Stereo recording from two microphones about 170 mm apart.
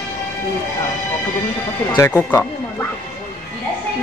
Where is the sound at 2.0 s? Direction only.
15° left (ahead or behind).